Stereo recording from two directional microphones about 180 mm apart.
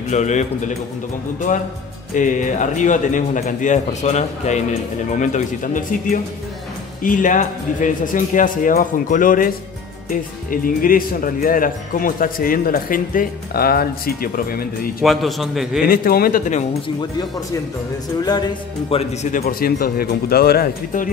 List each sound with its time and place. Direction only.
0.1 s a man's voice: 40° left (ahead or behind)
2.1 s speech: 45° left (ahead or behind)
15.0 s a man's voice: centre (ahead or behind)
15.9 s speech: 55° left (ahead or behind)
16.8 s speech: 20° left (ahead or behind)
18.9 s a man's voice: 30° left (ahead or behind)
19.3 s speech: 55° left (ahead or behind)